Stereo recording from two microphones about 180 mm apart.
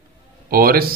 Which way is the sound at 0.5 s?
55° right (ahead or behind).